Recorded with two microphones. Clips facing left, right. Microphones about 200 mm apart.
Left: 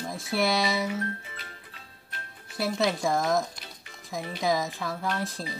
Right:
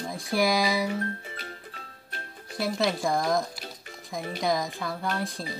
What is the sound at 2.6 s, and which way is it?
Speech, centre (ahead or behind).